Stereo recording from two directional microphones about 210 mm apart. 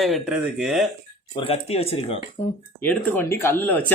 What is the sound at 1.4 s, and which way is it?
Speech, 30° left (ahead or behind).